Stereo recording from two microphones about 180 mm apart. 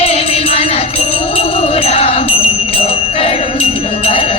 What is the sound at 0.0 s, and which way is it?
Music, 35° left (ahead or behind).